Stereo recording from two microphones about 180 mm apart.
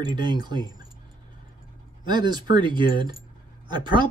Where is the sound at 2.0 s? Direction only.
25° right (ahead or behind).